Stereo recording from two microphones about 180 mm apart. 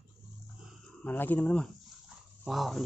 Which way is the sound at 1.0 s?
10° left (ahead or behind).